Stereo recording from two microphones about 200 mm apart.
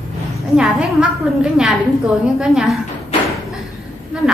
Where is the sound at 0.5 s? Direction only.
5° right (ahead or behind).